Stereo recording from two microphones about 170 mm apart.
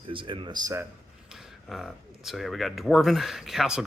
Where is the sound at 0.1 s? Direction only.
30° right (ahead or behind).